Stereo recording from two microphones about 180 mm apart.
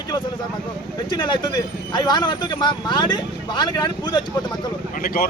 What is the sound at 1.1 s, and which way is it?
Speech, 25° left (ahead or behind).